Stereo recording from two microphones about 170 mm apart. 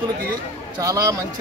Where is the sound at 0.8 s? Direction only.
20° right (ahead or behind).